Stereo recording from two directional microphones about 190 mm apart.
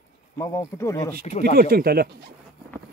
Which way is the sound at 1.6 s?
50° right (ahead or behind).